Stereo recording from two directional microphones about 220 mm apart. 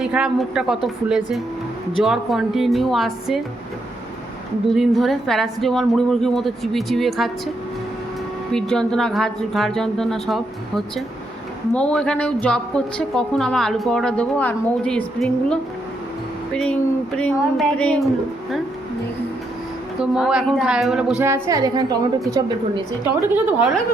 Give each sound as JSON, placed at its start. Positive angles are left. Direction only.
{"t": 0.0, "sound": "a woman's voice", "side_deg": -5}
{"t": 4.7, "sound": "a woman's voice", "side_deg": 0}
{"t": 8.5, "sound": "a woman's voice", "side_deg": 5}
{"t": 20.0, "sound": "a woman's voice", "side_deg": 0}